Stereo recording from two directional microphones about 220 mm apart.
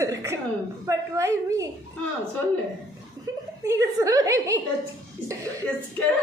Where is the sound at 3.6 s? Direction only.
15° right (ahead or behind).